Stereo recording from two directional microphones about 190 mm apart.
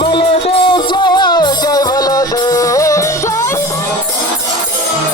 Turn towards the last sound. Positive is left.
turn(degrees=15)  # may be behind; listen again after turning